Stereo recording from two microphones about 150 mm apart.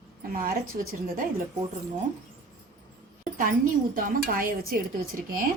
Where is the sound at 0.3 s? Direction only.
70° right (ahead or behind).